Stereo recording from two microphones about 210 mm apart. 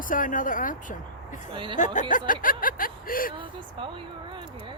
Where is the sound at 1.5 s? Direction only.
25° right (ahead or behind).